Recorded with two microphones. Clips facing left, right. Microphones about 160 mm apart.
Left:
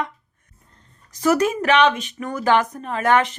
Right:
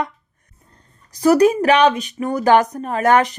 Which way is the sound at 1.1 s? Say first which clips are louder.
Right 6 dB; 35° right (ahead or behind).